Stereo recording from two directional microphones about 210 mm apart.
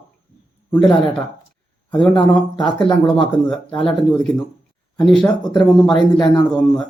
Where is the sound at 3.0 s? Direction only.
5° left (ahead or behind).